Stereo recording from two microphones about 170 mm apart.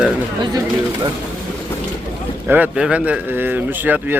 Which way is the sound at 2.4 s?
10° right (ahead or behind).